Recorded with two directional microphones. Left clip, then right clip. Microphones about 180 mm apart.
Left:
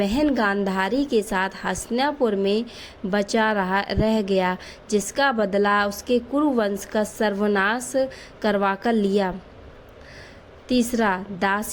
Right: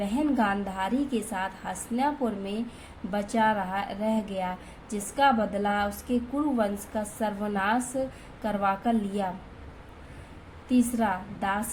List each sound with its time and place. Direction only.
0.1 s a woman's voice: 55° left (ahead or behind)
10.7 s a woman's voice: 50° left (ahead or behind)